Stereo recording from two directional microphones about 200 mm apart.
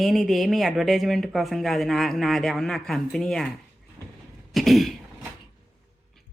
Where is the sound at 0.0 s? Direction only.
Centre (ahead or behind).